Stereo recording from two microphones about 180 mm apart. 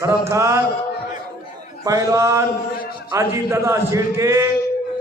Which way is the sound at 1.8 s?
20° right (ahead or behind).